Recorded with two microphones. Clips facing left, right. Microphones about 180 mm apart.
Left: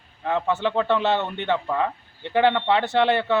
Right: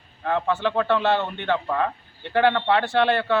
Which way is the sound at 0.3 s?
20° left (ahead or behind).